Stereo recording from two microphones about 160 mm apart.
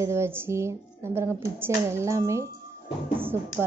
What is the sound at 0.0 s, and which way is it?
Speech, 15° right (ahead or behind).